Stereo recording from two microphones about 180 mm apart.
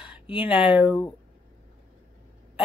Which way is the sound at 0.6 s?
25° left (ahead or behind).